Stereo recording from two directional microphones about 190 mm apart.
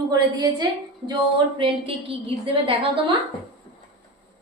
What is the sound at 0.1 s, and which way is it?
A woman's voice, 20° right (ahead or behind).